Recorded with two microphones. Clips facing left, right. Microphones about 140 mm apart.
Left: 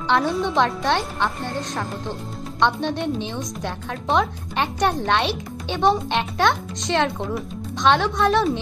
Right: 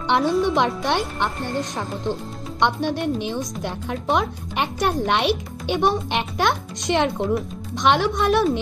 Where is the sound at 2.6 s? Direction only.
10° right (ahead or behind).